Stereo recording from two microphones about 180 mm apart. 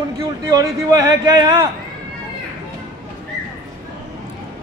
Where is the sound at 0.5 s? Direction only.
20° right (ahead or behind).